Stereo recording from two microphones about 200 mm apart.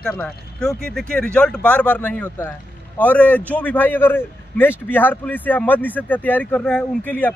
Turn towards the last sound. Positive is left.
turn(degrees=5)  # may be behind; listen again after turning